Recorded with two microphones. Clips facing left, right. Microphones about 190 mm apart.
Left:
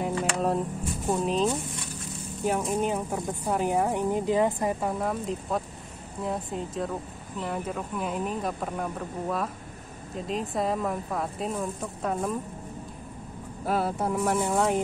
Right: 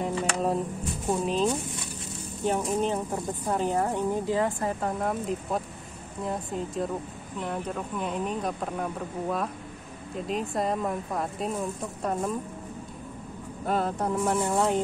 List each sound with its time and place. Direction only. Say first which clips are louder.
0.0 s a sound: even; centre (ahead or behind)
1.2 s a woman's voice: even; centre (ahead or behind); by 4.7 s 20° left (ahead or behind)
4.8 s speech: even; centre (ahead or behind)
13.7 s speech: even; 10° left (ahead or behind)